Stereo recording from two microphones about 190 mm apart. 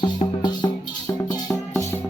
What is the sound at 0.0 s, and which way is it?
Music, 25° left (ahead or behind).